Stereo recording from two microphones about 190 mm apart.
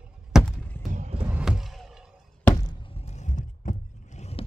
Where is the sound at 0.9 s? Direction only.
40° right (ahead or behind).